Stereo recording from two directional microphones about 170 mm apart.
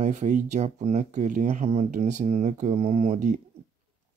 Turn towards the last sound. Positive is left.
turn(degrees=-45)  # may be behind; listen again after turning